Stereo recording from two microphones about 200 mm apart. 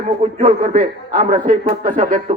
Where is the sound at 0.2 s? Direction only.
35° right (ahead or behind).